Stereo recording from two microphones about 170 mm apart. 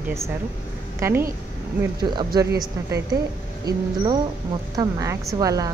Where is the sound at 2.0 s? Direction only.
25° right (ahead or behind).